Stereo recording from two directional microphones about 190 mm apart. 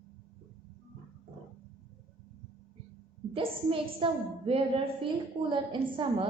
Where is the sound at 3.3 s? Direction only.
30° right (ahead or behind).